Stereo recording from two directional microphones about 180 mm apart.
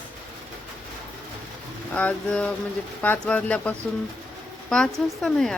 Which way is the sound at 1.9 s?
5° left (ahead or behind).